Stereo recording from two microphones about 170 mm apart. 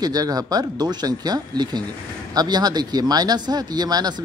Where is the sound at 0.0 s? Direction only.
25° right (ahead or behind).